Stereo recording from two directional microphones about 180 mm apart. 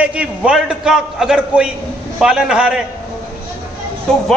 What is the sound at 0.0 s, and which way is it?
A man's voice, 5° right (ahead or behind).